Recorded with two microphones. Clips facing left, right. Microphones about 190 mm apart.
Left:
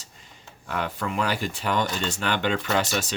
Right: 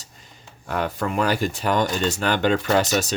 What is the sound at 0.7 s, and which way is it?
Speech, 40° right (ahead or behind).